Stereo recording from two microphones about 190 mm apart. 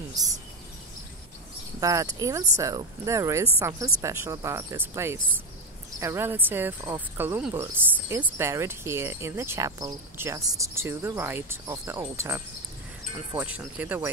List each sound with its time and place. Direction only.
0.1 s speech: 20° right (ahead or behind)
1.8 s speech: 15° right (ahead or behind)